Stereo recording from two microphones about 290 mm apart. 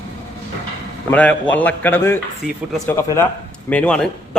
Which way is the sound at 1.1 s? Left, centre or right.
Centre.